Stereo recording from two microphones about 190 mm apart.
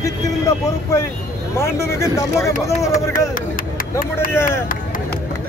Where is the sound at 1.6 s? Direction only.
15° left (ahead or behind).